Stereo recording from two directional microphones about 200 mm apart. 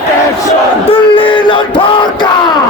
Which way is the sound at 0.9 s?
25° left (ahead or behind).